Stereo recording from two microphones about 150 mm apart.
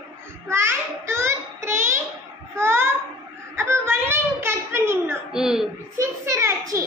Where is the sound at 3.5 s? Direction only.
15° right (ahead or behind).